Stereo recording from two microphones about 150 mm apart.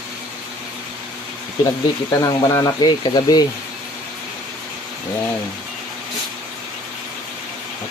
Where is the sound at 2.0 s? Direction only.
25° left (ahead or behind).